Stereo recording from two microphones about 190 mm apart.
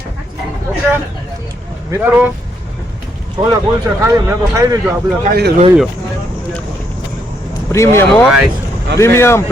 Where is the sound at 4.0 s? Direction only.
15° right (ahead or behind).